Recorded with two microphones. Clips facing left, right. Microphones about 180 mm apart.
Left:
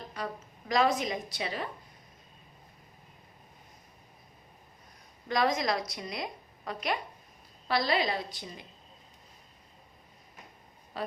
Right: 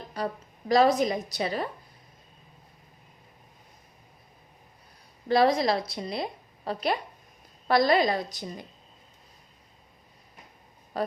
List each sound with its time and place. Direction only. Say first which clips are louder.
0.2 s a sound: right 6 dB; 35° right (ahead or behind)
0.7 s a woman's voice: right 6 dB; 35° right (ahead or behind)
5.3 s a woman's voice: right 6 dB; 35° right (ahead or behind)
7.7 s a woman's voice: right 7 dB; 45° right (ahead or behind)
10.9 s speech: right 6 dB; 40° right (ahead or behind)